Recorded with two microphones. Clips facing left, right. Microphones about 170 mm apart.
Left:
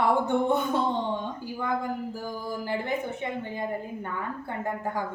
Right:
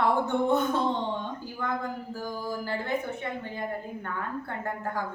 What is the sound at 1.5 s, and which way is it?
A woman's voice, 10° left (ahead or behind).